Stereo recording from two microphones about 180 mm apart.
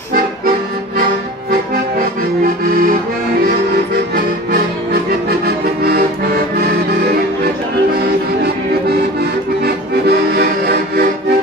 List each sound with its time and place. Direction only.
5.9 s accordion: 60° right (ahead or behind)
10.0 s music: 60° right (ahead or behind)